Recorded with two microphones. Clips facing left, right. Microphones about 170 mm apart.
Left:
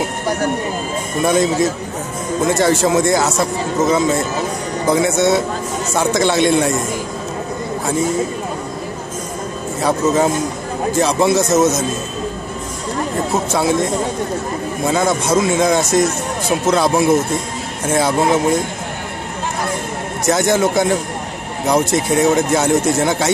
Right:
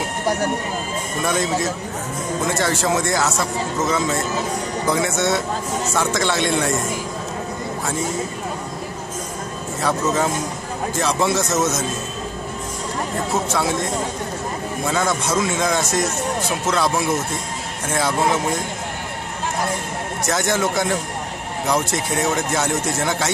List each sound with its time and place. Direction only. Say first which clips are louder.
1.2 s speech: left 7 dB; 15° left (ahead or behind)
9.8 s speech: left 5 dB; 15° left (ahead or behind)
14.9 s speech: left 5 dB; 15° left (ahead or behind)
20.2 s speech: left 6 dB; 15° left (ahead or behind)